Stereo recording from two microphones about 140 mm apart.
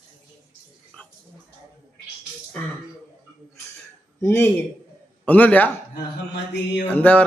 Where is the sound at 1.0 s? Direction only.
5° left (ahead or behind).